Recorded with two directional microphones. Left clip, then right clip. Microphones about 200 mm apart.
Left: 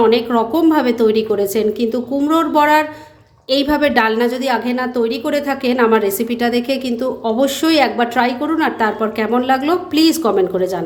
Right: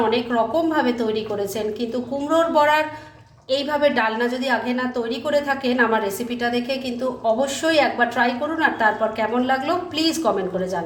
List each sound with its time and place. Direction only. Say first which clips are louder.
0.1 s a woman's voice: left 5 dB; 40° left (ahead or behind)